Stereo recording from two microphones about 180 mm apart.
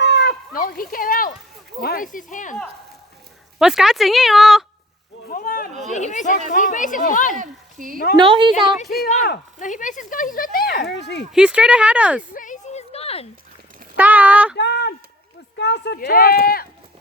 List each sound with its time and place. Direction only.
0.0 s a sound: 70° left (ahead or behind); by 1.3 s 50° left (ahead or behind)
1.8 s speech: 55° left (ahead or behind)
3.6 s speech: 5° right (ahead or behind)
5.3 s a sound: 55° left (ahead or behind)
5.9 s speech: 40° left (ahead or behind)
7.3 s a sound: 45° right (ahead or behind)
8.1 s speech: 30° right (ahead or behind)
8.9 s speech: 55° left (ahead or behind); by 11.3 s 75° left (ahead or behind)
11.3 s speech: 5° right (ahead or behind)
12.3 s a sound: 45° left (ahead or behind)
13.9 s speech: 10° right (ahead or behind)
14.5 s speech: 70° left (ahead or behind); by 16.6 s 55° left (ahead or behind)